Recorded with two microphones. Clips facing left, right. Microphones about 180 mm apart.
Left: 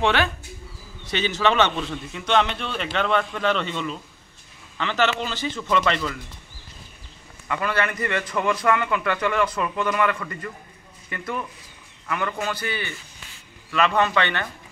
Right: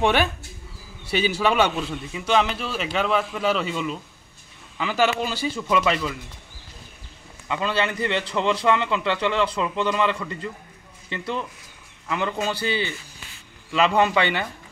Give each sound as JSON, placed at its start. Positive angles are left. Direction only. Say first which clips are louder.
{"t": 0.0, "sound": "a man's voice", "louder": "right 1 dB", "side_deg": -10}
{"t": 7.4, "sound": "a man's voice", "louder": "right 1 dB", "side_deg": -20}
{"t": 13.9, "sound": "speech", "louder": "right 2 dB", "side_deg": -10}